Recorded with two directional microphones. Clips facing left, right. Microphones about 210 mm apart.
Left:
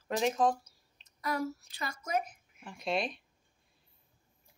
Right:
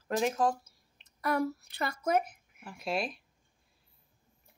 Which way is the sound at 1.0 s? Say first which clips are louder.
Right 4 dB; 60° right (ahead or behind).